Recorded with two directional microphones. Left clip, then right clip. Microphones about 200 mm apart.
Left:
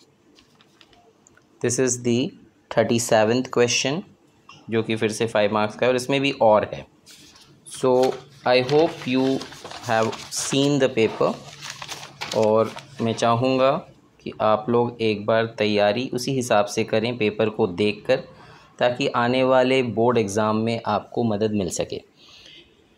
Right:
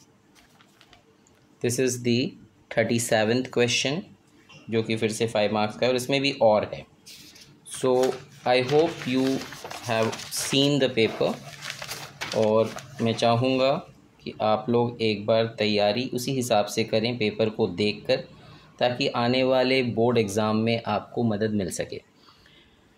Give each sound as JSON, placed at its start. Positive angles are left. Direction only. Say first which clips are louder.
{"t": 1.6, "sound": "speech", "louder": "left 3 dB", "side_deg": 15}
{"t": 8.0, "sound": "speech", "louder": "left 4 dB", "side_deg": 15}